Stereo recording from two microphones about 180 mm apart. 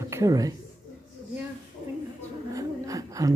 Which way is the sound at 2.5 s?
20° right (ahead or behind).